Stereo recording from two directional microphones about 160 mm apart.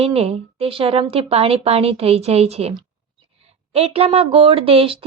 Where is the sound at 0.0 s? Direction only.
40° right (ahead or behind).